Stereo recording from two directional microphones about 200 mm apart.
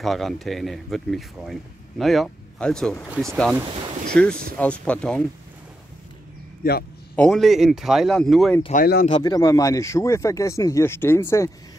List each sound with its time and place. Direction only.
0.0 s speech: centre (ahead or behind)
3.7 s boat: 30° right (ahead or behind)
4.1 s speech: 5° left (ahead or behind)
7.2 s speech: centre (ahead or behind)
8.7 s speech: 45° left (ahead or behind)
9.2 s speech: 15° left (ahead or behind)